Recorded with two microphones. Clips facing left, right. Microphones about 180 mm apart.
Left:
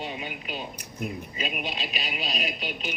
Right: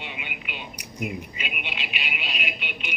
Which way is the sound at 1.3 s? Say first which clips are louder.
Left 4 dB; 35° left (ahead or behind).